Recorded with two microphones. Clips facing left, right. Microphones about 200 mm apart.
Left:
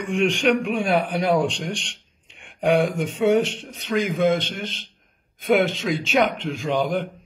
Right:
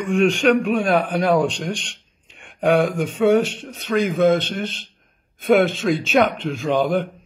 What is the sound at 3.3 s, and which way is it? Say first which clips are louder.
A man's voice: right 2 dB; 15° left (ahead or behind).